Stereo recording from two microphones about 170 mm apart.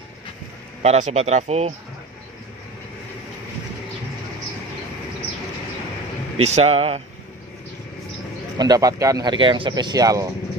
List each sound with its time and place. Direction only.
0.8 s speech: 45° right (ahead or behind)
6.4 s speech: 40° right (ahead or behind)
8.5 s speech: 20° right (ahead or behind)